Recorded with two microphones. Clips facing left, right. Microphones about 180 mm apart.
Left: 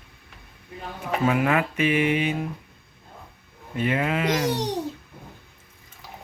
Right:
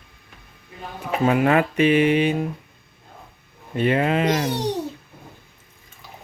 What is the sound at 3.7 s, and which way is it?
Speech, 30° right (ahead or behind).